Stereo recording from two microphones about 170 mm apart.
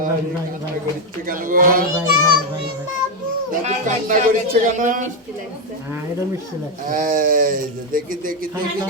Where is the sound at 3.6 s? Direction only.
45° right (ahead or behind).